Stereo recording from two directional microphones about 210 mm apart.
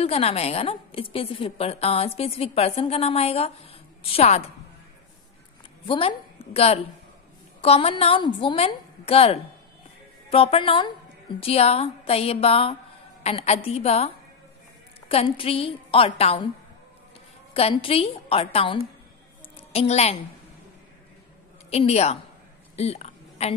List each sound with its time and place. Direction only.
0.0 s a woman's voice: 30° left (ahead or behind)
5.9 s a woman's voice: 25° left (ahead or behind)
17.6 s a woman's voice: 30° left (ahead or behind)
21.6 s a woman's voice: 30° left (ahead or behind)
22.8 s a sound: 30° left (ahead or behind)